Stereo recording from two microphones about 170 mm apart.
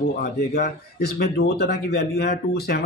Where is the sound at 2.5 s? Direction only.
70° left (ahead or behind).